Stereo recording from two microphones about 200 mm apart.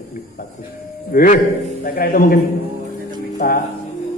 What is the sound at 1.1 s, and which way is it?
A man's voice, 45° left (ahead or behind).